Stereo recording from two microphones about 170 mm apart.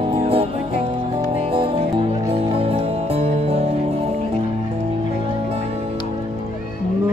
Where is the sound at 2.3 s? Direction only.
35° right (ahead or behind).